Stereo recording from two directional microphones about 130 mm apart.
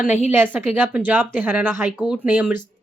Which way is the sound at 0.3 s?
15° right (ahead or behind).